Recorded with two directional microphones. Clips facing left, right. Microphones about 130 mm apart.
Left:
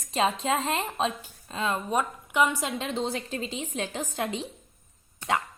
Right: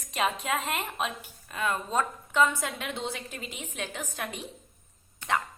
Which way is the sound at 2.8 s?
35° left (ahead or behind).